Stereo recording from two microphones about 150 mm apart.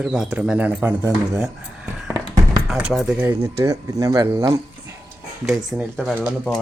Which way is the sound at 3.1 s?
15° right (ahead or behind).